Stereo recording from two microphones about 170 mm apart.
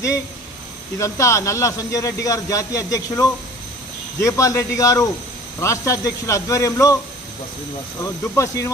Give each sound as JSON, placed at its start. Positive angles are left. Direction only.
{"t": 0.9, "sound": "a man's voice", "side_deg": 20}
{"t": 8.2, "sound": "a man's voice", "side_deg": 15}